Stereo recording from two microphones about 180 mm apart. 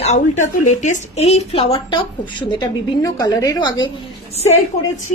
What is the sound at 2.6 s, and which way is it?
A woman's voice, 20° left (ahead or behind).